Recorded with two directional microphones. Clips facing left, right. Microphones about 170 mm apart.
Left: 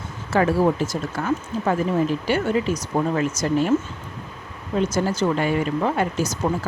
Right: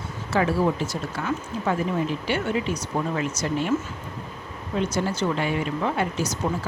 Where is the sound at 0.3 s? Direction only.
50° left (ahead or behind).